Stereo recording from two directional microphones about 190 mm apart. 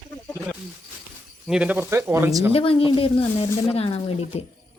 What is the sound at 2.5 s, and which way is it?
A woman's voice, 30° left (ahead or behind).